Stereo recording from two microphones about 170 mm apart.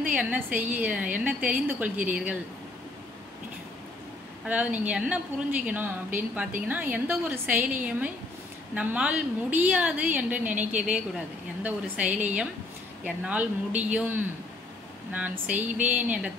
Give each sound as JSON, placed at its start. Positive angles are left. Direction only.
{"t": 0.0, "sound": "a woman's voice", "side_deg": -5}
{"t": 4.5, "sound": "a woman's voice", "side_deg": -5}
{"t": 15.4, "sound": "a woman's voice", "side_deg": -10}